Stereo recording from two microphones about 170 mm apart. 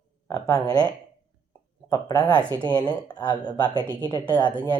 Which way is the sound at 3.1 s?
25° left (ahead or behind).